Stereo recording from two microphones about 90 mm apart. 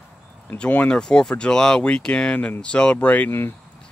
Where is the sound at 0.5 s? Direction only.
15° left (ahead or behind).